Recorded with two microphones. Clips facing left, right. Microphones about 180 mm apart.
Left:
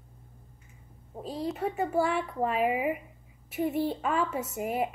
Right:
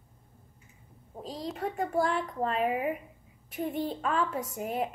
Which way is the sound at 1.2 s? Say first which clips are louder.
Left 3 dB; 5° left (ahead or behind).